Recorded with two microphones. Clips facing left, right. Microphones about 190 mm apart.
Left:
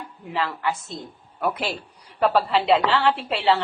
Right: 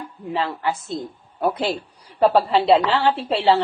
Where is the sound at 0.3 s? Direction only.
30° right (ahead or behind).